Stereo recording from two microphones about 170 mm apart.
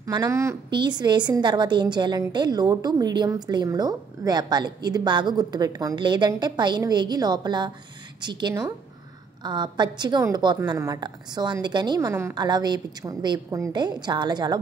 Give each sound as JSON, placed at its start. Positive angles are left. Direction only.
{"t": 0.0, "sound": "a woman's voice", "side_deg": -20}